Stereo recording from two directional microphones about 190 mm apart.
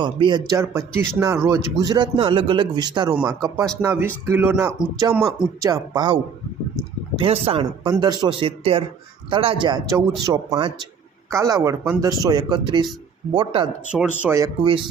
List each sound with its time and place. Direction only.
0.0 s speech: 25° right (ahead or behind)
5.1 s speech: 5° right (ahead or behind)
5.6 s speech: 20° right (ahead or behind)
7.2 s speech: 30° right (ahead or behind)
14.2 s speech: 15° right (ahead or behind)